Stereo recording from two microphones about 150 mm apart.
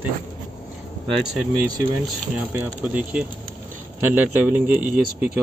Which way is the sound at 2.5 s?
10° right (ahead or behind).